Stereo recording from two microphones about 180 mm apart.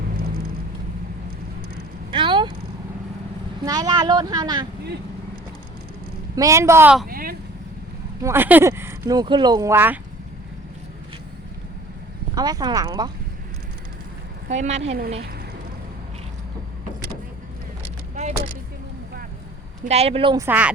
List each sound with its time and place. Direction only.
2.0 s vehicle: 25° right (ahead or behind)
3.7 s speech: 20° right (ahead or behind)
6.3 s speech: 20° right (ahead or behind)
7.1 s vehicle: 55° right (ahead or behind)
8.2 s speech: 10° right (ahead or behind)
12.3 s speech: 20° right (ahead or behind)
14.5 s a woman's voice: 40° right (ahead or behind)
18.1 s a sound: 40° right (ahead or behind)
19.8 s a woman's voice: 35° right (ahead or behind)
20.4 s speech: 10° right (ahead or behind)